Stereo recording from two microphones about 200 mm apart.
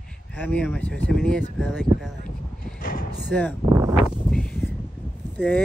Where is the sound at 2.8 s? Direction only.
45° left (ahead or behind).